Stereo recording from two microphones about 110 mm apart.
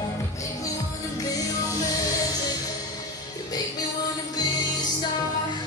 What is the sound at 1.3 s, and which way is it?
Music, 35° left (ahead or behind).